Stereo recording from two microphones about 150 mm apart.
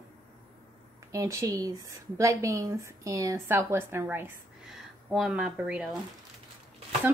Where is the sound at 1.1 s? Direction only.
20° right (ahead or behind).